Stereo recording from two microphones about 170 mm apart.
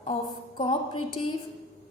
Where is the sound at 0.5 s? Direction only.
30° left (ahead or behind).